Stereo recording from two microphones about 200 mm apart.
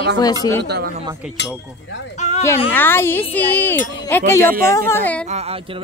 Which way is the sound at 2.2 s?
35° left (ahead or behind).